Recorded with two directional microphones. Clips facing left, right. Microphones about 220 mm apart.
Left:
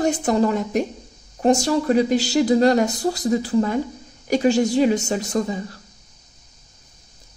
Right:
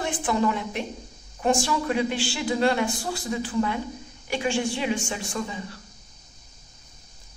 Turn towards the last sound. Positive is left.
turn(degrees=40)  # may be behind; listen again after turning